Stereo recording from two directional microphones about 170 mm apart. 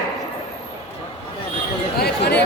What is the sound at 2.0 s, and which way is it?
Chatter, 70° left (ahead or behind).